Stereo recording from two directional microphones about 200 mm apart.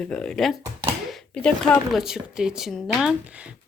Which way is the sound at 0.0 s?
5° left (ahead or behind).